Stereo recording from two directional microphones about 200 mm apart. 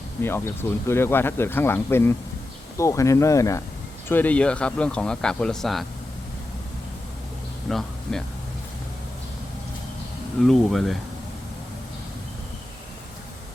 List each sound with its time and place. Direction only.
0.2 s speech: 10° left (ahead or behind)
7.7 s speech: centre (ahead or behind)
10.4 s speech: centre (ahead or behind)